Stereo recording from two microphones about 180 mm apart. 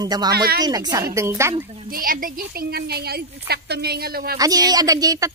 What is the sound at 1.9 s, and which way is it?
Speech, 50° right (ahead or behind).